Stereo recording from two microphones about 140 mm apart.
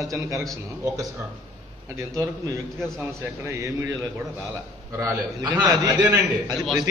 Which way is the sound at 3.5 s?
20° right (ahead or behind).